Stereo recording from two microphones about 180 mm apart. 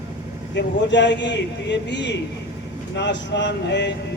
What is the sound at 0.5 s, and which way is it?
A man's voice, 75° left (ahead or behind).